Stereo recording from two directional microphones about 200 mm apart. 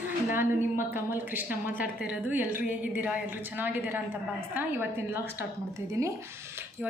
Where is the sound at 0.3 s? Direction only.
10° right (ahead or behind).